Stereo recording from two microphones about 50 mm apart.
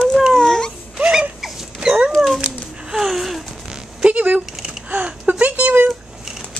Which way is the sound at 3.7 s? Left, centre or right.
Right.